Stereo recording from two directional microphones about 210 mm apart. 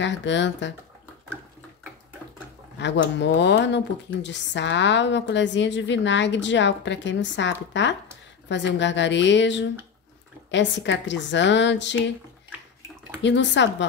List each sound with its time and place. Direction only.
0.0 s speech: 60° left (ahead or behind)
2.8 s speech: 55° left (ahead or behind)
13.2 s speech: 60° left (ahead or behind)